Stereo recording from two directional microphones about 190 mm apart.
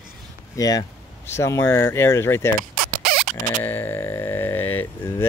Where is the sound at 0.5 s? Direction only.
20° left (ahead or behind).